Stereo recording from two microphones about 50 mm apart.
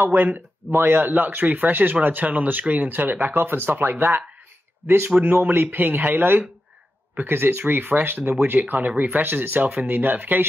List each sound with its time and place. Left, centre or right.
0.0 s speech: right
5.1 s speech: right